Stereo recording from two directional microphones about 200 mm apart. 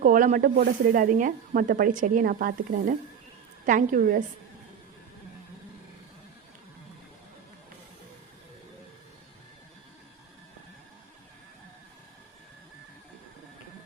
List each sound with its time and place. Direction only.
0.0 s a woman's voice: 40° right (ahead or behind)